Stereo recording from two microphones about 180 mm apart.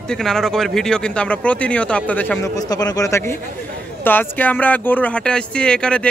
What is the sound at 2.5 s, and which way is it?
Speech, 20° left (ahead or behind).